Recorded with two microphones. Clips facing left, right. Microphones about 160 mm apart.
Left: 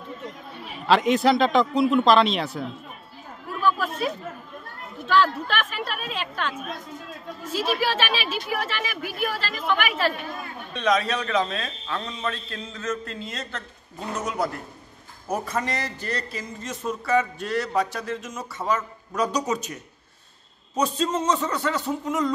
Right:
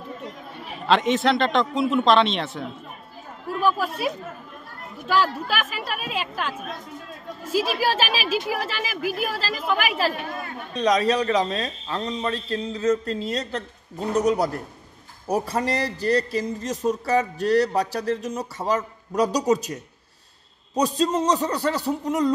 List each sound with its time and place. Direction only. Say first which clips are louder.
0.8 s a man's voice: left 1 dB; centre (ahead or behind)
3.6 s a woman's voice: right 1 dB; 10° right (ahead or behind)
7.5 s a woman's voice: right 2 dB; 10° right (ahead or behind)
7.9 s a man's voice: right 3 dB; 35° right (ahead or behind)